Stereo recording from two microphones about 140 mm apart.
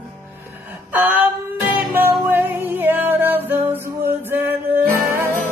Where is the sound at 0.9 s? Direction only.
10° right (ahead or behind).